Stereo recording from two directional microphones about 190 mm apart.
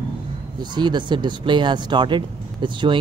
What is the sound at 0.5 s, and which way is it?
Speech, 25° right (ahead or behind).